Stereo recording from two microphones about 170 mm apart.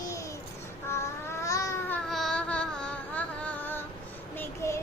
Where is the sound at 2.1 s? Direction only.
5° left (ahead or behind).